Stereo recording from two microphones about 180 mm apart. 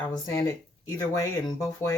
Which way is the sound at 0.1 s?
20° left (ahead or behind).